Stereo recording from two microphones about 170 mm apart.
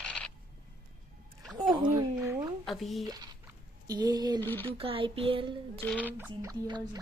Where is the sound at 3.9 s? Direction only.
25° right (ahead or behind).